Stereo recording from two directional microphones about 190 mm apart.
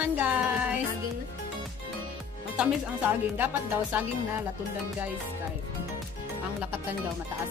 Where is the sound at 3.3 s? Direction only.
10° right (ahead or behind).